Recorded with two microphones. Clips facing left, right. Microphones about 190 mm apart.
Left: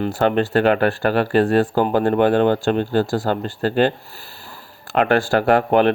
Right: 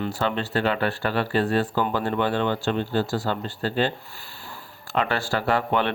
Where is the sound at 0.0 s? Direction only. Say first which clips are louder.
Left 8 dB; 55° left (ahead or behind).